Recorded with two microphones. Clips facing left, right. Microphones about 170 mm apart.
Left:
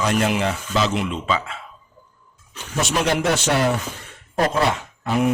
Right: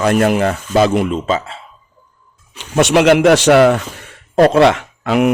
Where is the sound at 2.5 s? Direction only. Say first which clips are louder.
Right 11 dB; 90° right.